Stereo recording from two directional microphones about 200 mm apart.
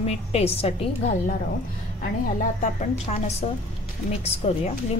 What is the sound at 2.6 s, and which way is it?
A woman's voice, 35° left (ahead or behind).